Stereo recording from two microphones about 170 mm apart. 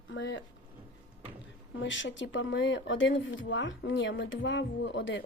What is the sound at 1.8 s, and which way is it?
Speech, 90° left.